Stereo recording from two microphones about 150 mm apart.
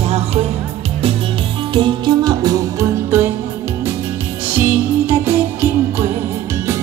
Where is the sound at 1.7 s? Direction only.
30° right (ahead or behind).